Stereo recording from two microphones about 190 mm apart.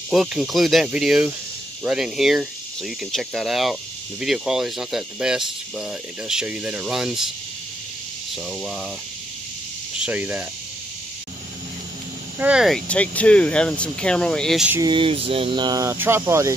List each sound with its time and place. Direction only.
0.1 s speech: centre (ahead or behind)
10.0 s speech: 5° right (ahead or behind)
12.4 s speech: 5° right (ahead or behind)
14.7 s speech: 20° right (ahead or behind)